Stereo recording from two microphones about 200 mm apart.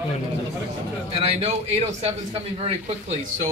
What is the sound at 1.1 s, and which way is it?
A man's voice, 30° right (ahead or behind).